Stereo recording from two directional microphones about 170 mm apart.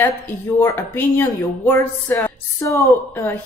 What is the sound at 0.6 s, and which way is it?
Speech, 15° left (ahead or behind).